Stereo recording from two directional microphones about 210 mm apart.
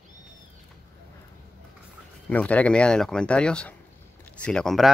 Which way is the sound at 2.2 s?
5° left (ahead or behind).